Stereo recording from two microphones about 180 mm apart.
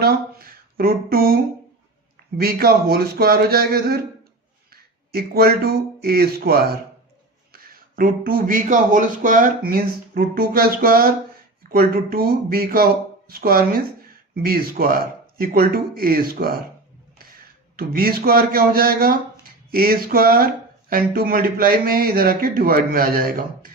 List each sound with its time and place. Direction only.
0.0 s a sound: 60° right (ahead or behind)
2.4 s speech: 60° right (ahead or behind)
17.7 s speech: 55° right (ahead or behind)